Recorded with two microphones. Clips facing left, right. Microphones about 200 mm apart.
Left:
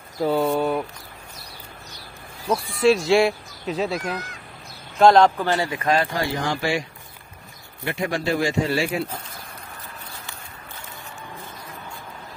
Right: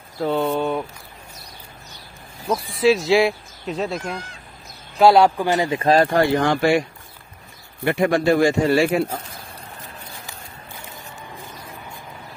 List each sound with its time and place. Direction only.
0.2 s a sound: centre (ahead or behind)
2.6 s speech: centre (ahead or behind)
4.0 s speech: 30° right (ahead or behind)
4.9 s a man's voice: 5° right (ahead or behind)
5.6 s speech: 25° right (ahead or behind)
6.1 s speech: 60° right (ahead or behind)
7.8 s speech: 55° right (ahead or behind)